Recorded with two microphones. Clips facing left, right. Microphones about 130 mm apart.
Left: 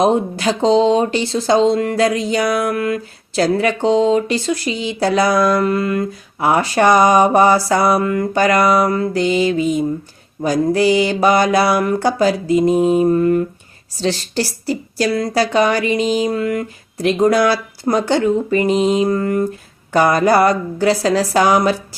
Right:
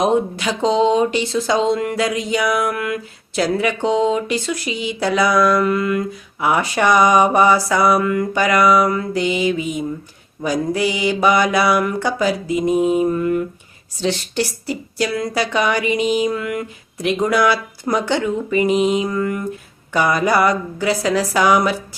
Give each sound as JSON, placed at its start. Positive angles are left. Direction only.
{"t": 0.0, "sound": "speech", "side_deg": 35}